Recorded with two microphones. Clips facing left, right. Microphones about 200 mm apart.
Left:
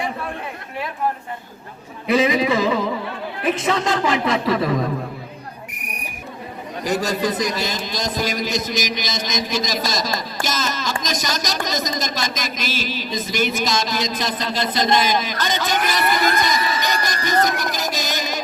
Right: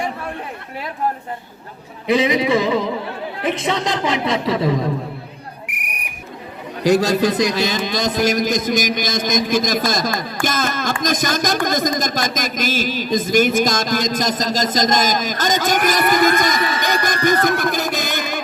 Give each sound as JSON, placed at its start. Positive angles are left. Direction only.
{"t": 2.1, "sound": "speech", "side_deg": -25}
{"t": 6.8, "sound": "speech", "side_deg": -90}
{"t": 10.4, "sound": "carnatic music", "side_deg": -55}
{"t": 11.0, "sound": "speech", "side_deg": -55}